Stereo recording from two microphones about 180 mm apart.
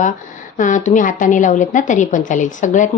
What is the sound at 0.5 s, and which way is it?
Speech, 45° left (ahead or behind).